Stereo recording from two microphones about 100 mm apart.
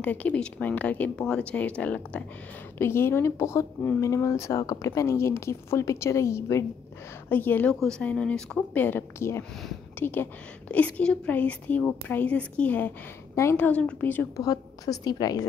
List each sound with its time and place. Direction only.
0.0 s speech: 15° left (ahead or behind)
2.8 s speech: 25° left (ahead or behind); by 8.6 s 10° left (ahead or behind)
8.7 s speech: 20° left (ahead or behind)
13.3 s a woman's voice: 30° left (ahead or behind)
13.6 s speech: 15° left (ahead or behind)
14.3 s a woman's voice: 40° left (ahead or behind)